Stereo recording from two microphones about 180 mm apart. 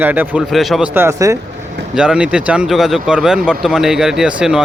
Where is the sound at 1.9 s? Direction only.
5° right (ahead or behind).